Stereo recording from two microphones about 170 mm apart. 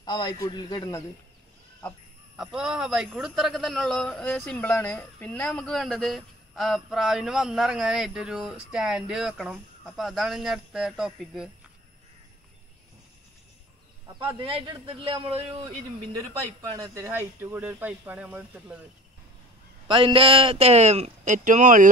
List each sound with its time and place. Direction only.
0.0 s a man's voice: 25° left (ahead or behind)
2.3 s a man's voice: 5° right (ahead or behind)
14.0 s a man's voice: 30° right (ahead or behind)
16.7 s speech: 20° right (ahead or behind)
19.9 s a man's voice: 30° right (ahead or behind); by 21.8 s 50° right (ahead or behind)